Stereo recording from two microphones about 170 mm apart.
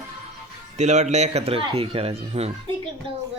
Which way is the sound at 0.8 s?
40° right (ahead or behind).